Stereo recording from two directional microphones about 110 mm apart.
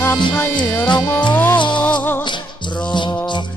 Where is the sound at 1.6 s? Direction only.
45° left (ahead or behind).